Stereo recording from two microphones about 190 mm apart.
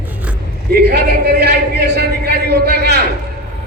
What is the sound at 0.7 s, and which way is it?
A man's voice, 55° right (ahead or behind).